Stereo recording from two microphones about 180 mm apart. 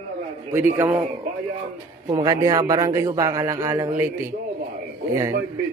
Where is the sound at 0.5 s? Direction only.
15° right (ahead or behind).